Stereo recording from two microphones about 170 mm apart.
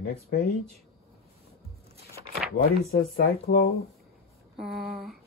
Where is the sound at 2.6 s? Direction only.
60° left (ahead or behind).